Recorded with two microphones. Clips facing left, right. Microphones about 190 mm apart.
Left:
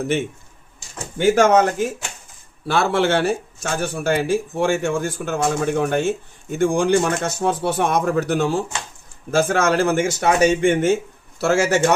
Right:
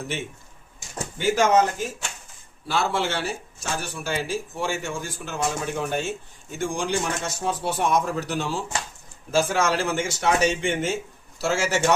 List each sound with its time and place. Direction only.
1.2 s a man's voice: 55° left (ahead or behind)